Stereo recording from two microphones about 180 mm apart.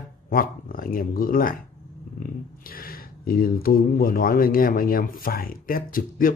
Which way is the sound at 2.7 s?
55° left (ahead or behind).